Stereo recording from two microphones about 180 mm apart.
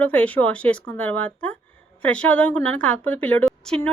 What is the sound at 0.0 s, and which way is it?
A woman's voice, 10° left (ahead or behind).